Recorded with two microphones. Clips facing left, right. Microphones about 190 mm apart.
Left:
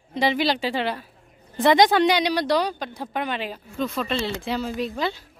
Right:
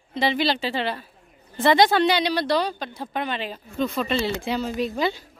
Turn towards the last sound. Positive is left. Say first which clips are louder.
# right 2 dB
turn(degrees=0)  # may be behind; listen again after turning